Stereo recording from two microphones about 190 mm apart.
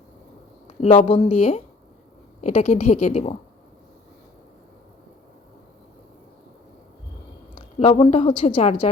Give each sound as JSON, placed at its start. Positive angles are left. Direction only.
{"t": 0.8, "sound": "a woman's voice", "side_deg": 35}
{"t": 7.5, "sound": "a sound", "side_deg": 30}
{"t": 8.4, "sound": "a woman's voice", "side_deg": 35}